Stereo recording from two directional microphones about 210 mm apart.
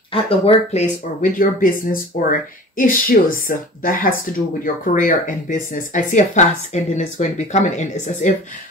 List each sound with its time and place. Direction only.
0.1 s speech: 30° left (ahead or behind)